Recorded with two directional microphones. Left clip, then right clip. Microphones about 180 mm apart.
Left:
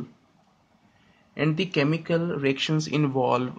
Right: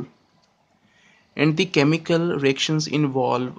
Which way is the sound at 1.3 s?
30° right (ahead or behind).